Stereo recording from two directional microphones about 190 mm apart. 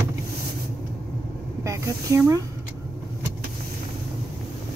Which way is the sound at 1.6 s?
15° right (ahead or behind).